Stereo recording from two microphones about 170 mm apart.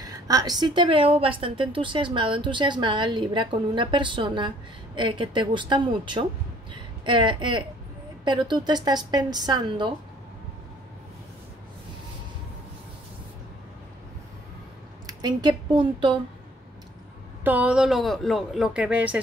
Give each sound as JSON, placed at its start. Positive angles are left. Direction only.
{"t": 0.0, "sound": "a woman's voice", "side_deg": -20}
{"t": 15.0, "sound": "a woman's voice", "side_deg": -25}
{"t": 17.4, "sound": "speech", "side_deg": -10}